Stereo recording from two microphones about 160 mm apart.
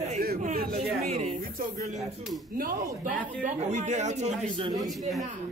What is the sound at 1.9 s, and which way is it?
Speech, centre (ahead or behind).